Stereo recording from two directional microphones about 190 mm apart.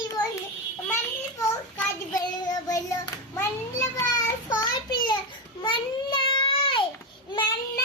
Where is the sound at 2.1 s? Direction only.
20° left (ahead or behind).